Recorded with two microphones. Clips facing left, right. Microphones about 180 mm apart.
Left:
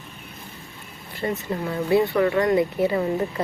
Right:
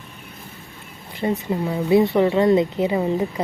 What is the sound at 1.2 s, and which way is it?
Speech, 15° right (ahead or behind).